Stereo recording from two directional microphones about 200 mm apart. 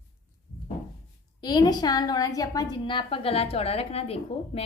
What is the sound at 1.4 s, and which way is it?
A woman's voice, 20° left (ahead or behind).